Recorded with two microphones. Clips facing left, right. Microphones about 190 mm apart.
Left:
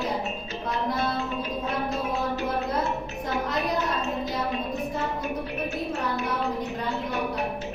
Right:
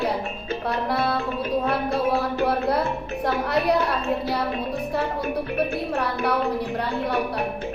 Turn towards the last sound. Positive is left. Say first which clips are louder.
# right 4 dB
turn(degrees=-60)  # may be behind; listen again after turning